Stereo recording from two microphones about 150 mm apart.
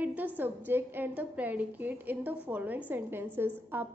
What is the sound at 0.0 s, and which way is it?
A woman's voice, 10° right (ahead or behind).